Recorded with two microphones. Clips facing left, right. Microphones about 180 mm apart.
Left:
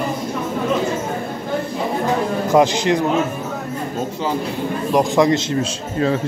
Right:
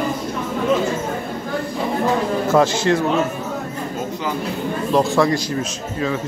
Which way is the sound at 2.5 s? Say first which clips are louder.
Left 2 dB; 15° left (ahead or behind).